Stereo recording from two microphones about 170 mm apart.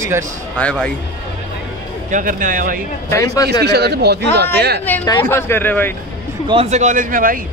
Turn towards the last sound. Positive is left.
turn(degrees=-55)  # may be behind; listen again after turning